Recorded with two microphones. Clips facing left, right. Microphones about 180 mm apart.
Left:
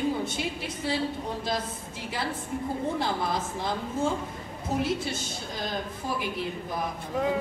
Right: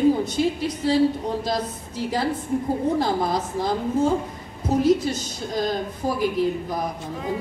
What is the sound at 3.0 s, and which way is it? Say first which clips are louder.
A woman's voice: right 6 dB; 40° right (ahead or behind).